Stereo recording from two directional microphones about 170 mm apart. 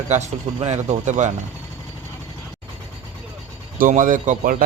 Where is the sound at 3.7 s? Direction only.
50° right (ahead or behind).